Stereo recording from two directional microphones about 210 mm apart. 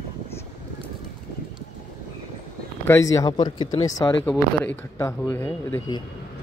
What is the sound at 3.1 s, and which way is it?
Speech, 15° left (ahead or behind).